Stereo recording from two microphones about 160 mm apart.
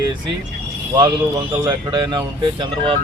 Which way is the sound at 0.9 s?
25° right (ahead or behind).